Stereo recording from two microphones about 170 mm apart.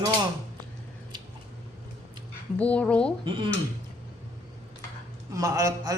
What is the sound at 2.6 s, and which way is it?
Speech, 10° left (ahead or behind).